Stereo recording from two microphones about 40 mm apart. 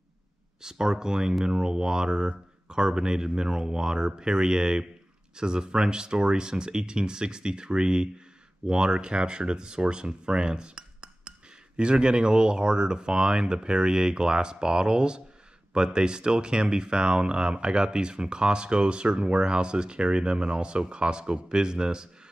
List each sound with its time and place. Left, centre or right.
0.6 s speech: centre